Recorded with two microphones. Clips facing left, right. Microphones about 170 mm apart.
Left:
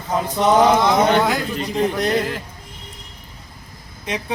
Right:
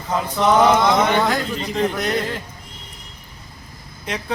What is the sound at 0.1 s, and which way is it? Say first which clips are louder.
A man's voice: left 1 dB; 20° left (ahead or behind).